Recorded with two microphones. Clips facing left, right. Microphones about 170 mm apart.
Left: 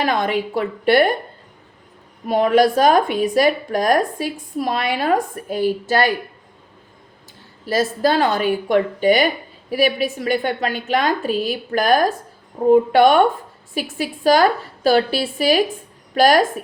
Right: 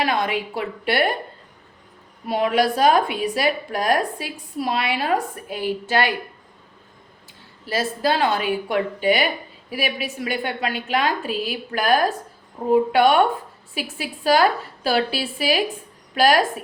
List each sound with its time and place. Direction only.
0.0 s a woman's voice: 45° left (ahead or behind)
2.2 s a woman's voice: 45° left (ahead or behind)
7.7 s a woman's voice: 40° left (ahead or behind)